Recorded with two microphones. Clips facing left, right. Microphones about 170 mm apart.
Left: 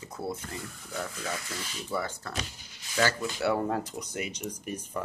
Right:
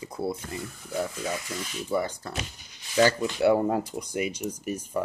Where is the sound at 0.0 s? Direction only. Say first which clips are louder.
Right 5 dB; 10° right (ahead or behind).